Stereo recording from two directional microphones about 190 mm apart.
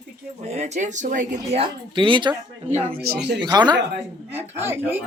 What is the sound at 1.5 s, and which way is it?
Speech, 30° right (ahead or behind).